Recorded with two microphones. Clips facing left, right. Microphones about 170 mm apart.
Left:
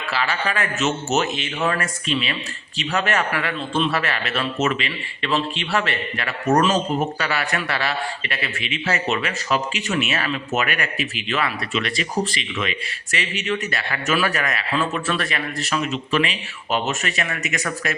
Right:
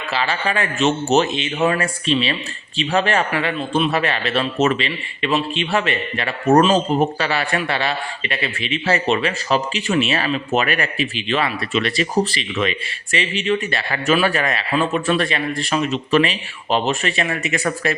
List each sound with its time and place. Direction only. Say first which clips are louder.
0.1 s a man's voice: right 2 dB; 25° right (ahead or behind)
5.2 s a man's voice: right 3 dB; 20° right (ahead or behind)
15.9 s speech: right 5 dB; 35° right (ahead or behind)